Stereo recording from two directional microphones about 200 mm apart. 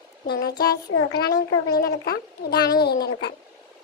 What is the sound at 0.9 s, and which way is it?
Speech, 90° left.